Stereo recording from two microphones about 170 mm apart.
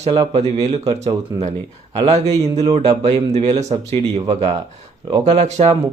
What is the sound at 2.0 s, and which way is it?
Speech, 40° right (ahead or behind).